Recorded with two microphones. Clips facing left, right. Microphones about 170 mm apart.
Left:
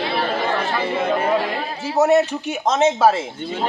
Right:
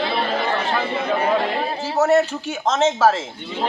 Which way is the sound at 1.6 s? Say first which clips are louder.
Right 2 dB; 30° right (ahead or behind).